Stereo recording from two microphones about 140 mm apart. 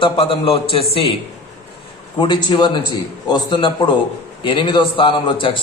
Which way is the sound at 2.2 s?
35° left (ahead or behind).